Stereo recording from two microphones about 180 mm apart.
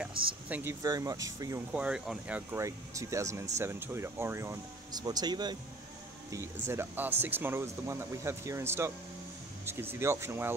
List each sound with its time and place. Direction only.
0.0 s speech: 10° right (ahead or behind)
1.7 s speech: 5° right (ahead or behind)